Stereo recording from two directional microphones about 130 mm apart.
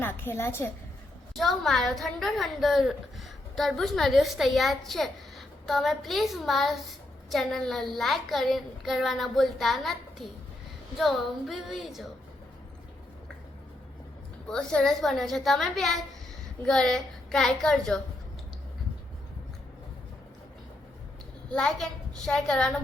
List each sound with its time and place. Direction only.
0.0 s a woman's voice: 15° left (ahead or behind)
1.4 s a woman's voice: centre (ahead or behind)
14.4 s a woman's voice: 5° left (ahead or behind)
21.5 s a woman's voice: 5° left (ahead or behind)